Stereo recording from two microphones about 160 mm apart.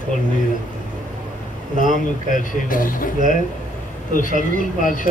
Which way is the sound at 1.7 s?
55° left (ahead or behind).